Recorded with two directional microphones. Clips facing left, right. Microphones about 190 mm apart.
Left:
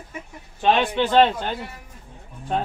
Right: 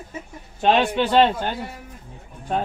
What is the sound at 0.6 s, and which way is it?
Speech, 10° right (ahead or behind).